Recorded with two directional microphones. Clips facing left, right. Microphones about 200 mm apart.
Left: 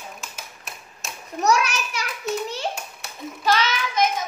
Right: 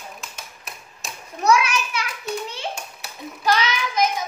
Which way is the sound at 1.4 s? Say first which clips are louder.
Right 2 dB; 40° left (ahead or behind).